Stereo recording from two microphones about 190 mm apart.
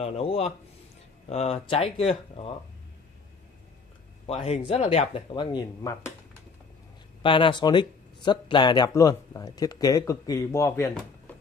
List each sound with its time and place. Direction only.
0.0 s speech: 30° left (ahead or behind)
4.5 s speech: 35° left (ahead or behind)
7.2 s speech: 25° left (ahead or behind)